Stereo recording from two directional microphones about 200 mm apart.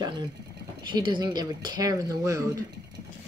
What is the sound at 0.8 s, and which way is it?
Speech, 25° right (ahead or behind).